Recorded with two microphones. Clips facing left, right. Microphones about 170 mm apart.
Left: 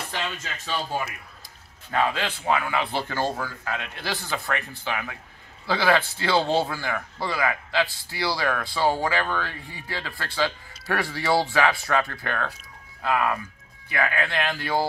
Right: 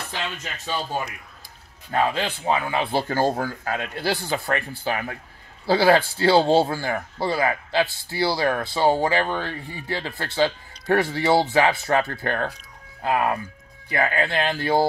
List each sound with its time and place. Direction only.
0.0 s speech: 15° right (ahead or behind)
1.9 s a man's voice: 30° right (ahead or behind)
12.1 s a man's voice: 35° right (ahead or behind)